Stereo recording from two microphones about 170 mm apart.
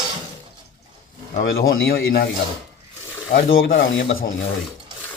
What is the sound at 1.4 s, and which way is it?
Speech, 65° left (ahead or behind).